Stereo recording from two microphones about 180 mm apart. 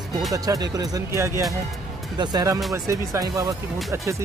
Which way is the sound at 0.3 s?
20° right (ahead or behind).